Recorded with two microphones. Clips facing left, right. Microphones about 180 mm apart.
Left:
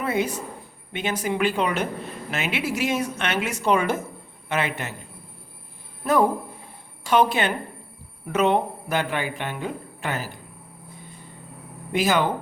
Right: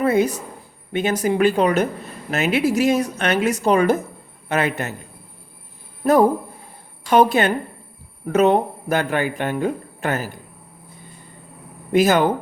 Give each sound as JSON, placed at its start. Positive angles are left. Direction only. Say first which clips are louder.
{"t": 0.0, "sound": "speech", "louder": "right 7 dB", "side_deg": -40}
{"t": 7.1, "sound": "speech", "louder": "right 5 dB", "side_deg": -45}
{"t": 11.9, "sound": "speech", "louder": "right 6 dB", "side_deg": -45}